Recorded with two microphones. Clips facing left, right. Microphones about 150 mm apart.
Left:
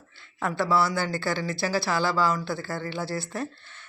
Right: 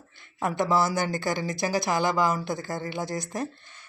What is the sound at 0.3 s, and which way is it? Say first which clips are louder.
Speech: even; 20° right (ahead or behind).